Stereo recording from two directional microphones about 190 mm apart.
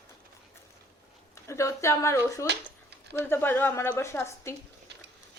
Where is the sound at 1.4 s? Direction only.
15° left (ahead or behind).